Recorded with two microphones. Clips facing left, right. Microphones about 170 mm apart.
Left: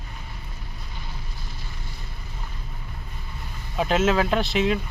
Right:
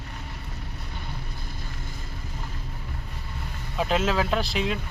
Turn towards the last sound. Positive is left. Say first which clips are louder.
# left 4 dB
turn(degrees=0)  # may be behind; listen again after turning